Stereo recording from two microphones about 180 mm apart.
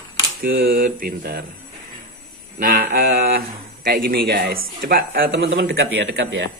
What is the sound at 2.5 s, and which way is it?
Speech, 50° right (ahead or behind).